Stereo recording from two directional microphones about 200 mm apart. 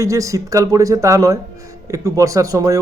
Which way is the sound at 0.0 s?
15° right (ahead or behind).